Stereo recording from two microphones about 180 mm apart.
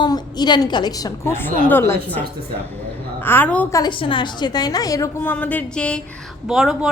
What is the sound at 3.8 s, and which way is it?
A woman's voice, 25° left (ahead or behind).